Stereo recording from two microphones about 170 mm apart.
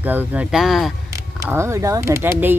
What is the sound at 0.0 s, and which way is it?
Speech, 10° right (ahead or behind).